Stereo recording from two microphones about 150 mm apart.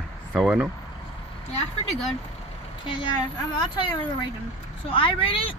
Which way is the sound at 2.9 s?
30° left (ahead or behind).